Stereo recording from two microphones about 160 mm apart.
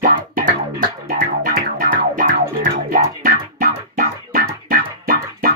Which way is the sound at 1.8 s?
55° right (ahead or behind).